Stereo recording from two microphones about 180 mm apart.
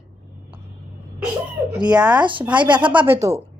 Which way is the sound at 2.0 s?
5° right (ahead or behind).